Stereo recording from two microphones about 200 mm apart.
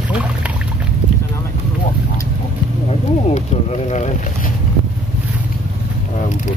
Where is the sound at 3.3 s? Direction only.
35° left (ahead or behind).